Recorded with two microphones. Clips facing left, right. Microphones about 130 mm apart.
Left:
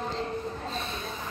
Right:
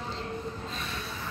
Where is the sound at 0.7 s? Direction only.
25° left (ahead or behind).